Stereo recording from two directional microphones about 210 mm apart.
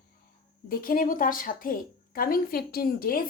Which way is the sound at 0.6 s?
40° left (ahead or behind).